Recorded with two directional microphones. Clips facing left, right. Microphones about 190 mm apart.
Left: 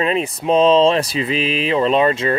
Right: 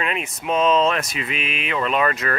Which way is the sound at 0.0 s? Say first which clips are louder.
Left 8 dB; 35° left (ahead or behind).